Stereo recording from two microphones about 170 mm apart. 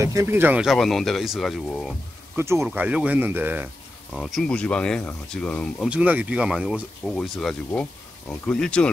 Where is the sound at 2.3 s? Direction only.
15° right (ahead or behind).